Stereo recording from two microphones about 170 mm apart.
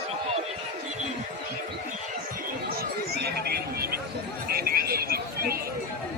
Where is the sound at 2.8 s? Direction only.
70° right (ahead or behind).